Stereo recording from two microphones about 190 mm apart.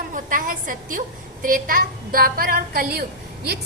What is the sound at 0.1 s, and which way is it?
A woman's voice, 45° right (ahead or behind).